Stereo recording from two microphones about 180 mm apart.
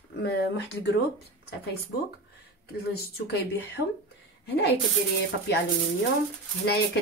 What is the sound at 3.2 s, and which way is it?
A woman's voice, 65° left (ahead or behind).